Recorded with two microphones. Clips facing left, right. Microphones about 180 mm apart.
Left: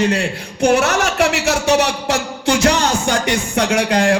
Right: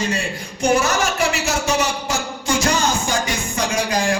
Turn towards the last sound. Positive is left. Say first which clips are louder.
# left 5 dB
turn(degrees=70)  # may be behind; listen again after turning